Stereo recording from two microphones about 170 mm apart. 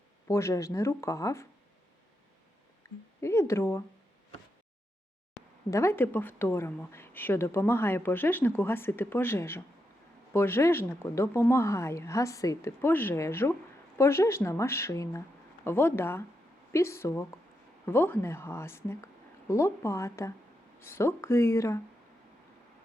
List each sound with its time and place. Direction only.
0.3 s a woman's voice: 15° left (ahead or behind)
2.8 s a sound: 15° left (ahead or behind)
3.2 s a woman's voice: 15° left (ahead or behind)
5.7 s a woman's voice: 15° left (ahead or behind)